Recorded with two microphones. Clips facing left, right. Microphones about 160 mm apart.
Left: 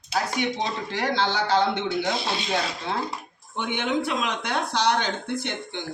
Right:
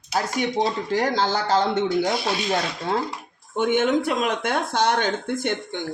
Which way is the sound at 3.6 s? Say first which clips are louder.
Right 6 dB; 45° right (ahead or behind).